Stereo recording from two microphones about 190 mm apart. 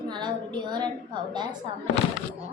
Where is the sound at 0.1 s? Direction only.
25° right (ahead or behind).